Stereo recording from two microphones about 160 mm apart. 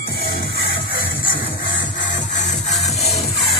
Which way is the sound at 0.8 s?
65° left (ahead or behind).